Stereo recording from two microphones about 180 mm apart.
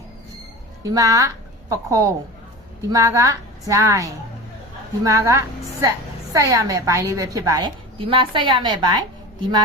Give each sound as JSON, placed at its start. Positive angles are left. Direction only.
{"t": 0.9, "sound": "a woman's voice", "side_deg": -20}